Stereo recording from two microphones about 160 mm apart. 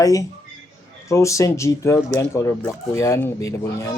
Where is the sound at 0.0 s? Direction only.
20° left (ahead or behind).